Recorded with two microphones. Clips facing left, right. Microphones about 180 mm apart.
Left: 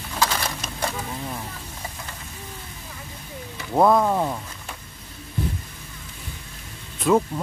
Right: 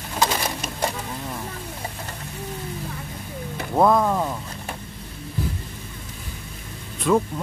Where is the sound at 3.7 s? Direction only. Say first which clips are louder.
Even; 5° left (ahead or behind).